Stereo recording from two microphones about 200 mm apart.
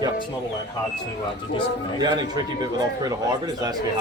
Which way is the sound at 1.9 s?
20° right (ahead or behind).